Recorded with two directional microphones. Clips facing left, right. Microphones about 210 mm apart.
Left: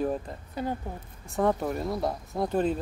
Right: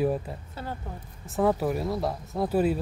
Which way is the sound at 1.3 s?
5° right (ahead or behind).